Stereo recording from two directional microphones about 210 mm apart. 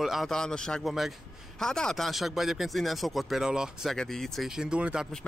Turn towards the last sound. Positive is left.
turn(degrees=0)  # may be behind; listen again after turning